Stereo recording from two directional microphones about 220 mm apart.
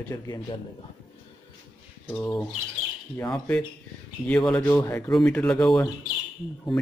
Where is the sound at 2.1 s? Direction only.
5° left (ahead or behind).